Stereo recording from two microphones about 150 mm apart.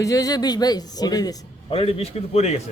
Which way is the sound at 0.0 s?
25° left (ahead or behind).